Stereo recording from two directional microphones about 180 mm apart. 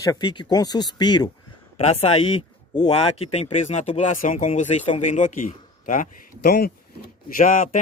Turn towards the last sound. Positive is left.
turn(degrees=45)  # may be behind; listen again after turning